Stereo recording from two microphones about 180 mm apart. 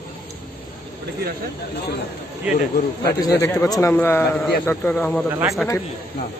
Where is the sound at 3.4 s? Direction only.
15° left (ahead or behind); by 5.8 s centre (ahead or behind).